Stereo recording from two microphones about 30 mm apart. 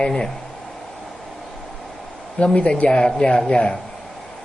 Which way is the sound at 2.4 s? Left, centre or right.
Left.